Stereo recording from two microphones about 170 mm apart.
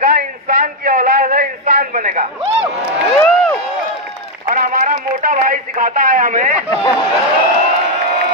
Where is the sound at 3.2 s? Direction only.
10° left (ahead or behind).